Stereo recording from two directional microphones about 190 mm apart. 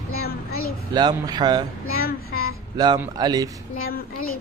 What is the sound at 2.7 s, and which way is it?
Speech, 20° right (ahead or behind).